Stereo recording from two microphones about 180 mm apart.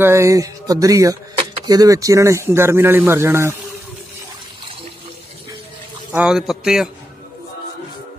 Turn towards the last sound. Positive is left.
turn(degrees=-5)  # may be behind; listen again after turning